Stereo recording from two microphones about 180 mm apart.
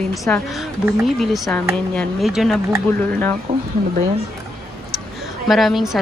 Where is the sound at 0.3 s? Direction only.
5° left (ahead or behind).